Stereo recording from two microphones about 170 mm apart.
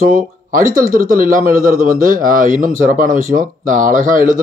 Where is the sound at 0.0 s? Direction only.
55° right (ahead or behind).